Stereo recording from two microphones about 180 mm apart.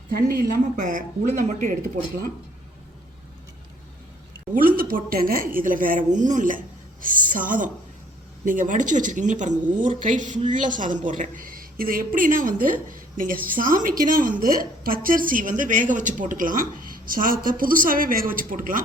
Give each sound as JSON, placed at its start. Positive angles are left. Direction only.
{"t": 0.1, "sound": "speech", "side_deg": -55}
{"t": 4.5, "sound": "speech", "side_deg": -50}